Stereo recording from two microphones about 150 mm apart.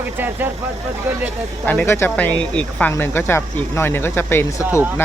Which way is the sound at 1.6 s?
15° left (ahead or behind).